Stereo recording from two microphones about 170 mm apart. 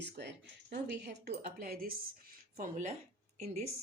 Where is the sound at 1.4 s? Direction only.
60° right (ahead or behind).